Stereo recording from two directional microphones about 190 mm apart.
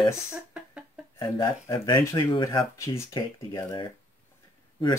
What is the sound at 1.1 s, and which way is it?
Speech, 25° left (ahead or behind).